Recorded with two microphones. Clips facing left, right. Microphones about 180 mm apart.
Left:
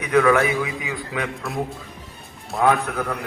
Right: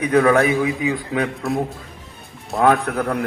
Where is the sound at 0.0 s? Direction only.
30° right (ahead or behind).